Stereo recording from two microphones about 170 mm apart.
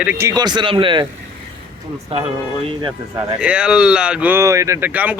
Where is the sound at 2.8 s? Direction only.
25° right (ahead or behind).